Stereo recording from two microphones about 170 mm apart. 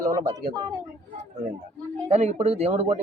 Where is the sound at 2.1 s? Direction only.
40° right (ahead or behind).